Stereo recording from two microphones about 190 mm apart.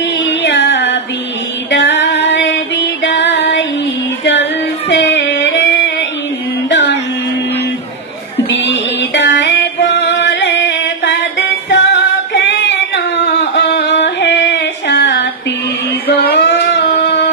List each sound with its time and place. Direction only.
0.2 s music: 70° left (ahead or behind)
1.7 s female singing: 70° left (ahead or behind)
6.7 s music: 65° left (ahead or behind)
8.5 s music: 65° left (ahead or behind)
12.4 s female singing: 65° left (ahead or behind)
13.6 s a sound: 65° left (ahead or behind)
16.1 s child singing: 60° left (ahead or behind)
17.0 s a sound: 65° left (ahead or behind)